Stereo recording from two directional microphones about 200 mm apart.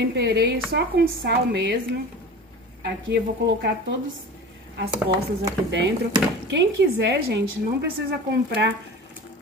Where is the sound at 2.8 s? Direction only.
60° right (ahead or behind).